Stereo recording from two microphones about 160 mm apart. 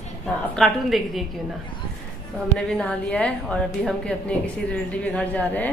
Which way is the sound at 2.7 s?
5° left (ahead or behind).